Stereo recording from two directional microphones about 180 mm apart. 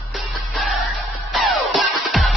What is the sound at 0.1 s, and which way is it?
Music, centre (ahead or behind).